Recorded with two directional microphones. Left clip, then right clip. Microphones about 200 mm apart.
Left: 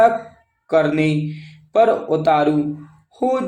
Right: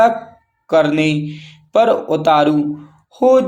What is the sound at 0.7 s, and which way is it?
Speech, 25° right (ahead or behind).